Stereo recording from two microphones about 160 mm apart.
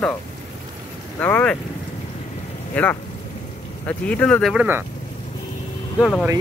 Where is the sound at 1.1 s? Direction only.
10° left (ahead or behind).